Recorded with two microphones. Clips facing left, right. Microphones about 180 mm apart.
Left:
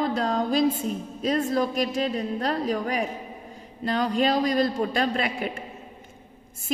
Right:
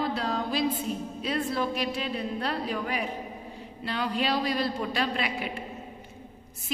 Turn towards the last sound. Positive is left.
turn(degrees=45)  # may be behind; listen again after turning